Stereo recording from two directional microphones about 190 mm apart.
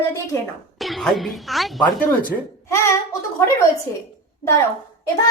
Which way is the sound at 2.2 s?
15° left (ahead or behind).